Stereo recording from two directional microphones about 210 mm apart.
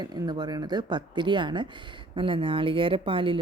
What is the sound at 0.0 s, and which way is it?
Speech, 20° right (ahead or behind).